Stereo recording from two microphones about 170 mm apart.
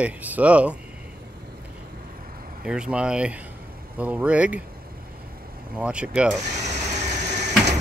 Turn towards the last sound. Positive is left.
turn(degrees=-45)  # may be behind; listen again after turning